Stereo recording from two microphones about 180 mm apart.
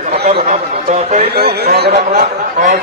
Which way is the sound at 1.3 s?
60° right (ahead or behind).